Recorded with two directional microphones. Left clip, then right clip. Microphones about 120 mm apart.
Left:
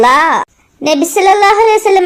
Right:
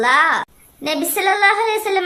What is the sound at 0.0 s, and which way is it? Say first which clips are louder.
A woman's voice: left 6 dB; 45° left (ahead or behind).